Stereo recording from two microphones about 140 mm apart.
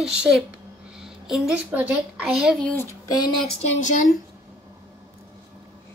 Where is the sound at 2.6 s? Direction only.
15° left (ahead or behind).